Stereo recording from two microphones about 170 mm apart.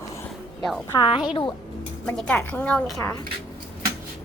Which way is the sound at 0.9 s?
25° left (ahead or behind).